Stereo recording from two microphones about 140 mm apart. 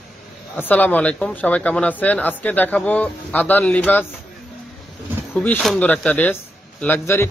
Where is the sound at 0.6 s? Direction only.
10° left (ahead or behind).